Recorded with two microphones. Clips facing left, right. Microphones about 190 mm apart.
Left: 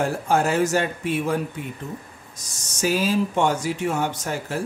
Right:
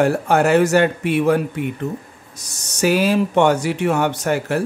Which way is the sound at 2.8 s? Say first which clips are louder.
Right 5 dB; 70° right (ahead or behind).